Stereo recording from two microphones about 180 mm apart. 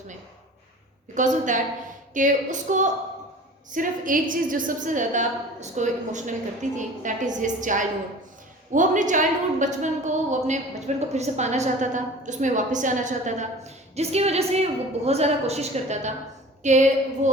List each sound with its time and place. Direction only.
1.1 s a woman's voice: 45° right (ahead or behind)